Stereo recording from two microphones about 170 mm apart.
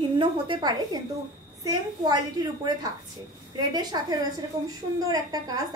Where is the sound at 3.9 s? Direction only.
25° right (ahead or behind).